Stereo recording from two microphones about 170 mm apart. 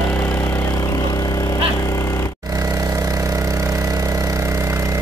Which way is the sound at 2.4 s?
20° right (ahead or behind).